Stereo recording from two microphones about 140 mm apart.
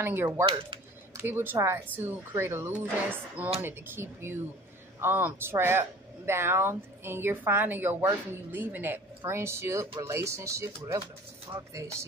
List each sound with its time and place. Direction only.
0.0 s speech: 15° right (ahead or behind)